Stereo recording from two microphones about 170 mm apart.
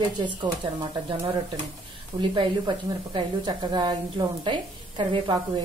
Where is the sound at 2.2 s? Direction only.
30° right (ahead or behind).